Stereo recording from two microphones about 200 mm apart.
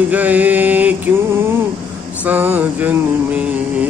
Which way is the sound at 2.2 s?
10° right (ahead or behind).